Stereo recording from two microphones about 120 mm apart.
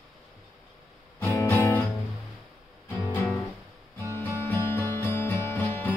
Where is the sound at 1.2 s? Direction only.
20° left (ahead or behind).